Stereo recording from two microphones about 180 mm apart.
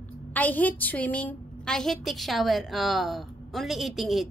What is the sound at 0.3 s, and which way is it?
Child singing, 10° left (ahead or behind).